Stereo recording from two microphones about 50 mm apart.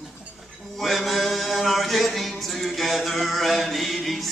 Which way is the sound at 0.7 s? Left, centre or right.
Centre.